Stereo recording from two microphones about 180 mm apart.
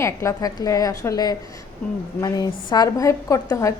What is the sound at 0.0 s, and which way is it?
A woman's voice, 15° left (ahead or behind).